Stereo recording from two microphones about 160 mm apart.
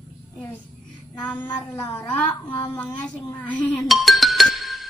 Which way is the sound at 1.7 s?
20° left (ahead or behind).